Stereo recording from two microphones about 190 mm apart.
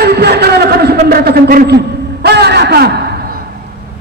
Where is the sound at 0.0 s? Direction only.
60° right (ahead or behind).